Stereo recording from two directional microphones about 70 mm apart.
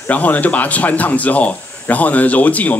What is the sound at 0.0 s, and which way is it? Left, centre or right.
Speech, left.